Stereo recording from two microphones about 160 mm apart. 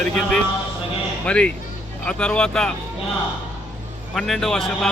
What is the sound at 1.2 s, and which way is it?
A man's voice, 5° left (ahead or behind).